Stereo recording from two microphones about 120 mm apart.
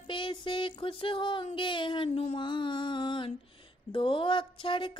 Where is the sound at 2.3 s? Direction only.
40° left (ahead or behind).